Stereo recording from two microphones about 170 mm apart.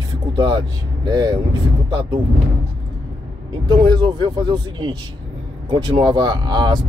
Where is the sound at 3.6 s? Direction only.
25° right (ahead or behind).